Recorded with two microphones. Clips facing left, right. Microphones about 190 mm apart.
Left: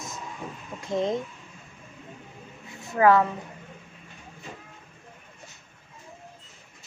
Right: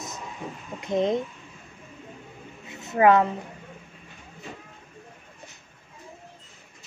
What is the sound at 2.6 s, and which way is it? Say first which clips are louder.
Speech: right 1 dB; 20° right (ahead or behind).